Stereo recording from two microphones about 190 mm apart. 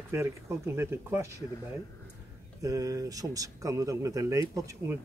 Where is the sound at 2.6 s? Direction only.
15° right (ahead or behind).